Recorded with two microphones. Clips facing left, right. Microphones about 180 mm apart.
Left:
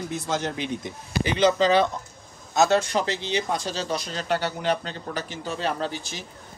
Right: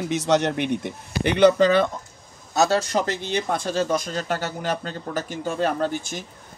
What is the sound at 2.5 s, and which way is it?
A man's voice, 35° right (ahead or behind).